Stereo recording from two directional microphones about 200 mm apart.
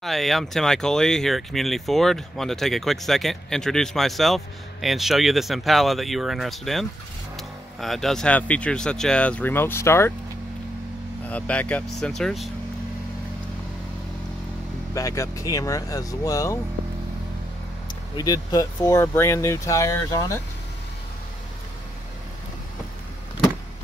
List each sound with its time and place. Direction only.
0.0 s speech: centre (ahead or behind)
11.2 s speech: 5° left (ahead or behind)
15.0 s speech: 15° left (ahead or behind)
17.8 s speech: 20° left (ahead or behind)